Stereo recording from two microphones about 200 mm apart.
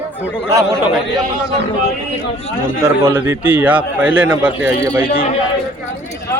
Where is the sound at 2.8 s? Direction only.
10° right (ahead or behind).